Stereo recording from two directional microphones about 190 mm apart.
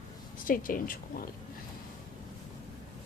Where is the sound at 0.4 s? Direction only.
45° left (ahead or behind).